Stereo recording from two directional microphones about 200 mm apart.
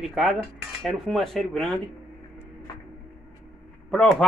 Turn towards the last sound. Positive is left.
turn(degrees=5)  # may be behind; listen again after turning